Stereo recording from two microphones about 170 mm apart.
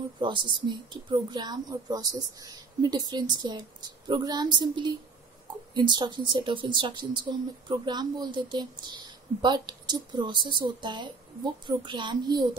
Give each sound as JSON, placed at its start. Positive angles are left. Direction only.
{"t": 0.2, "sound": "speech", "side_deg": -25}